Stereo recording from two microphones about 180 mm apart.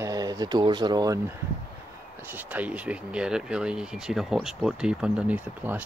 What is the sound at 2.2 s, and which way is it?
Speech, 10° right (ahead or behind).